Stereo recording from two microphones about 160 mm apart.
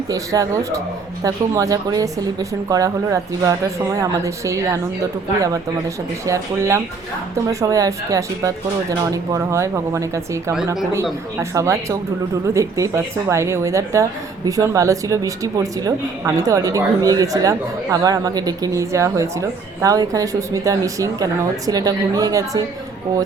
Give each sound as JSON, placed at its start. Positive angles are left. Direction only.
{"t": 0.1, "sound": "speech", "side_deg": -20}
{"t": 6.2, "sound": "speech", "side_deg": -20}